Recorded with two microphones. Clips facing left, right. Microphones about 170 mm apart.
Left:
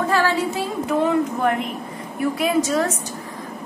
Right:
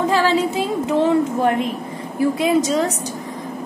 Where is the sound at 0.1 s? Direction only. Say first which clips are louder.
Right 3 dB; 20° right (ahead or behind).